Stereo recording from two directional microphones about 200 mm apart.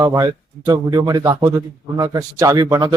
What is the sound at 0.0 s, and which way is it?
A man's voice, 15° right (ahead or behind).